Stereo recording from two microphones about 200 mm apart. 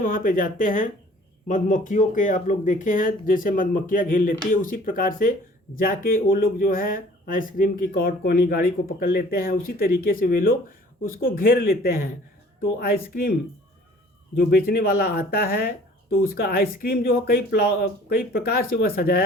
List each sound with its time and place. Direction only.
0.0 s speech: 45° left (ahead or behind)
14.3 s speech: 50° left (ahead or behind)